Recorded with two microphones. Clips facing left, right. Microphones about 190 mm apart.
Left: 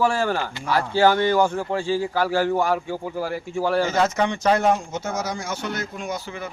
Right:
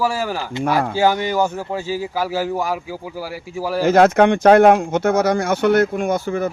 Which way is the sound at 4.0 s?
60° right (ahead or behind).